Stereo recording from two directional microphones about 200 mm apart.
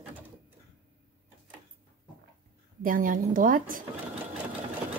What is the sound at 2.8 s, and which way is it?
A woman's voice, 45° right (ahead or behind).